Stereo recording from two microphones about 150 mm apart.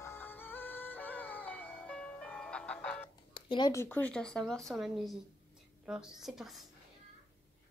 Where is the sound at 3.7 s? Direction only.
15° left (ahead or behind); by 6.7 s centre (ahead or behind).